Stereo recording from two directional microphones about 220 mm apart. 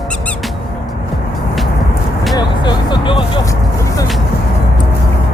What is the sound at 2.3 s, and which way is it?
Vehicle, 20° left (ahead or behind).